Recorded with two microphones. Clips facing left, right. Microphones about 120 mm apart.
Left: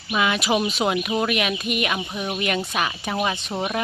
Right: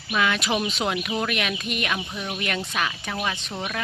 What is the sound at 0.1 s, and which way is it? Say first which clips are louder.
Speech: left 2 dB; 10° left (ahead or behind).